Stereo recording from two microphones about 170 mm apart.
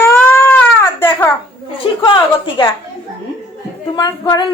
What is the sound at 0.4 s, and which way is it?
Baby cry, 10° left (ahead or behind).